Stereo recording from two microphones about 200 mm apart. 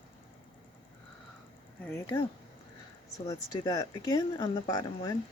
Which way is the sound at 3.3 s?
20° left (ahead or behind).